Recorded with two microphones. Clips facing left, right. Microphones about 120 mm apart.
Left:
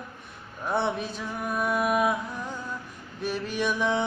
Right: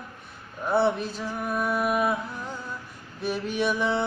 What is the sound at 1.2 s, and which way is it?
Music, centre (ahead or behind).